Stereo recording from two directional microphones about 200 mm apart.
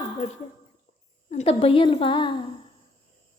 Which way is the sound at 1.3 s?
30° left (ahead or behind).